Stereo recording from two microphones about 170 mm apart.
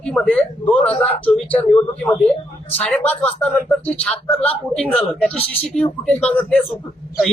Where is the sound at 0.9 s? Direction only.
35° left (ahead or behind).